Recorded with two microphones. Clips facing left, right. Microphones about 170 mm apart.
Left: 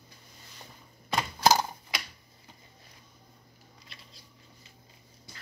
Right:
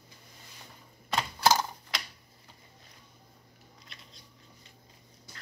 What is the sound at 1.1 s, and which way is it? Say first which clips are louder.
Typewriter: left 2 dB; 15° left (ahead or behind).